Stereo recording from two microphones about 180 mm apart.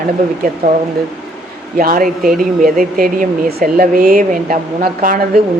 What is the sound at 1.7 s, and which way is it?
Speech, 50° right (ahead or behind).